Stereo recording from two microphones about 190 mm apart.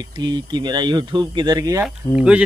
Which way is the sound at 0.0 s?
25° right (ahead or behind).